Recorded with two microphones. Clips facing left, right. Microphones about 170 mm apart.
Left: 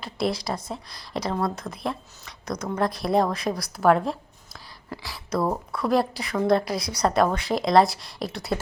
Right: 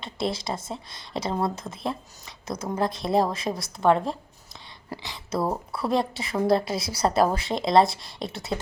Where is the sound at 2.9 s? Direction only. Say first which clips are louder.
Left 1 dB; centre (ahead or behind).